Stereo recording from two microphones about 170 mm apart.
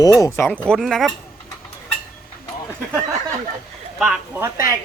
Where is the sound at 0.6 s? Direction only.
5° left (ahead or behind).